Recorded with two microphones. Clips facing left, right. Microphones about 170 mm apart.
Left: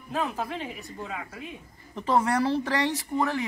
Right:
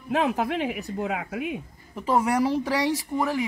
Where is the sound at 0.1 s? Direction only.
85° right.